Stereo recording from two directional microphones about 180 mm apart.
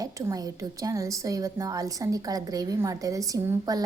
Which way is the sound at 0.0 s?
20° right (ahead or behind).